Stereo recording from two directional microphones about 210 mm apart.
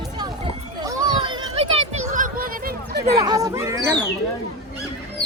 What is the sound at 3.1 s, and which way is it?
Speech, 15° right (ahead or behind).